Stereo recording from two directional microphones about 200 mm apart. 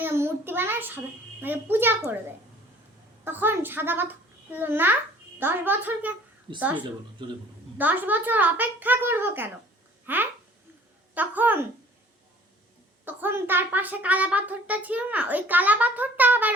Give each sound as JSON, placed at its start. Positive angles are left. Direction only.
{"t": 0.0, "sound": "a sound", "side_deg": -10}
{"t": 3.2, "sound": "a woman's voice", "side_deg": -10}
{"t": 7.2, "sound": "a man's voice", "side_deg": -25}
{"t": 7.8, "sound": "a woman's voice", "side_deg": -10}
{"t": 13.1, "sound": "a woman's voice", "side_deg": -10}